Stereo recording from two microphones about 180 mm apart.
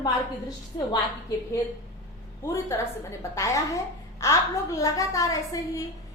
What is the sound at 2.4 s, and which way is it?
A woman's voice, 15° left (ahead or behind).